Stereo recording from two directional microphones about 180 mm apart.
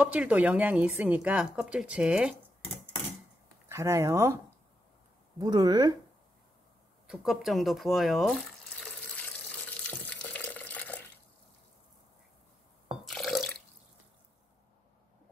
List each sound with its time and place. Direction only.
0.0 s speech: 10° right (ahead or behind)
3.6 s speech: 15° right (ahead or behind)
5.4 s speech: 20° right (ahead or behind)
7.1 s water tap: centre (ahead or behind)
13.0 s water: centre (ahead or behind)